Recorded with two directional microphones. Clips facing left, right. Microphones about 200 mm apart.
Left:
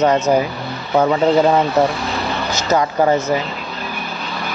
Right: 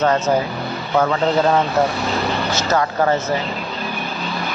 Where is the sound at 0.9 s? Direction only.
20° left (ahead or behind).